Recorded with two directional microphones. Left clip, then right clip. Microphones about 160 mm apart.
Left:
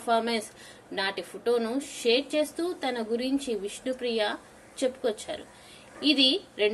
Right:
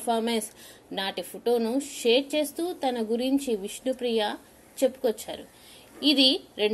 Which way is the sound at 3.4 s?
35° right (ahead or behind).